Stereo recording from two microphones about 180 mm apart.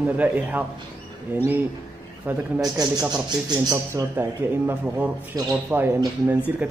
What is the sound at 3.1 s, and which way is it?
Speech, 25° right (ahead or behind).